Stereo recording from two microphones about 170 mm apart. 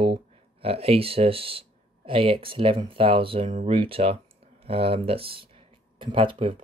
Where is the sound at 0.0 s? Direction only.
35° right (ahead or behind).